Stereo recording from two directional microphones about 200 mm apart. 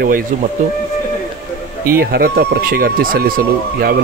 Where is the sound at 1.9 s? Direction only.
50° right (ahead or behind).